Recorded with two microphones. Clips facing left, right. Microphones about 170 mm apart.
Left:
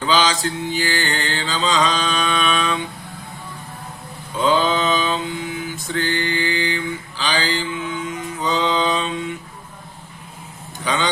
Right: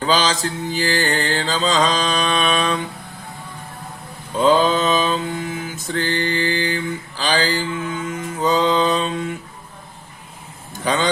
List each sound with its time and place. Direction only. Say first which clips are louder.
0.0 s mantra: even; 40° right (ahead or behind)
4.4 s mantra: right 2 dB; 40° right (ahead or behind)
10.8 s a man's voice: right 2 dB; 45° right (ahead or behind)